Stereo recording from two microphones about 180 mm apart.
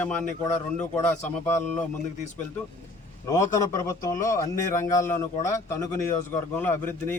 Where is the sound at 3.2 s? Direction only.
15° left (ahead or behind).